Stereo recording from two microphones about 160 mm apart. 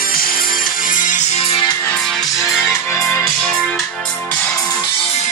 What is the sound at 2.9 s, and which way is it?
Music, 15° left (ahead or behind).